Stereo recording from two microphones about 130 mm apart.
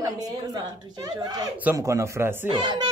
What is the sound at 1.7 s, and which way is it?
Speech, 25° right (ahead or behind).